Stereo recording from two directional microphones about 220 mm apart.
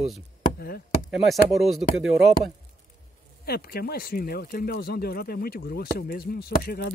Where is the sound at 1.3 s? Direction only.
Centre (ahead or behind).